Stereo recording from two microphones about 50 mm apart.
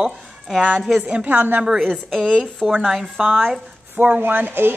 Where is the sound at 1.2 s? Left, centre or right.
Right.